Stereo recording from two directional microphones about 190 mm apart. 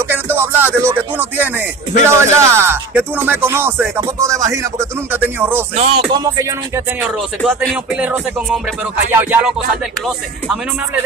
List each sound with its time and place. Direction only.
0.1 s music: 10° right (ahead or behind)
2.0 s speech: 15° right (ahead or behind)
5.8 s music: 30° right (ahead or behind)
7.0 s music: 5° right (ahead or behind)
9.1 s speech: 10° right (ahead or behind)